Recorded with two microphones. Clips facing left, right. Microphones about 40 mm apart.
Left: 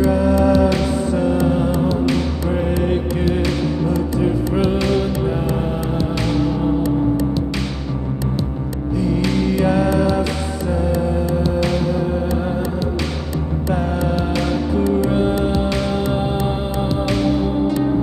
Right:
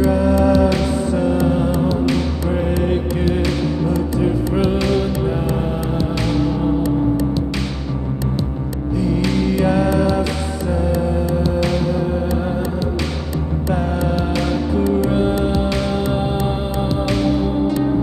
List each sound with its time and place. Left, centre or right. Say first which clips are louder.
0.0 s music: even; centre
4.6 s music: even; centre
9.2 s music: even; centre
13.7 s music: even; centre